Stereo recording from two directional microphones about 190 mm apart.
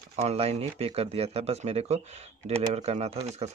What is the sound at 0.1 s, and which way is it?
Speech, 35° right (ahead or behind).